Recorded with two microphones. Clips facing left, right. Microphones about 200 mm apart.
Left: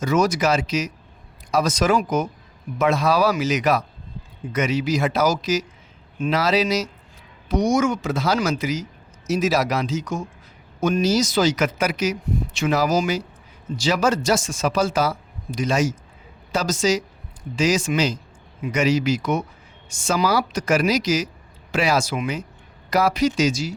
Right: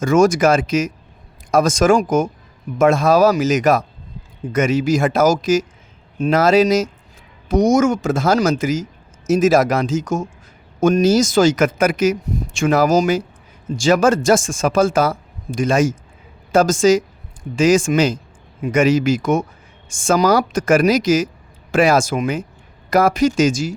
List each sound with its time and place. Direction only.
0.0 s speech: 50° right (ahead or behind)